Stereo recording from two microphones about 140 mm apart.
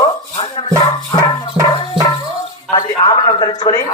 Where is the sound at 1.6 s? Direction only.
40° right (ahead or behind).